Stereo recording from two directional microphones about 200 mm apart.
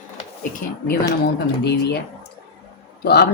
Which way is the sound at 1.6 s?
55° left (ahead or behind).